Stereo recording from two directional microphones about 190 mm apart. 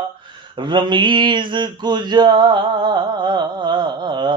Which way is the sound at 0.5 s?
25° right (ahead or behind).